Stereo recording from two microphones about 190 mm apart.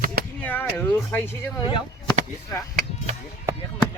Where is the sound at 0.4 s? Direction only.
10° left (ahead or behind).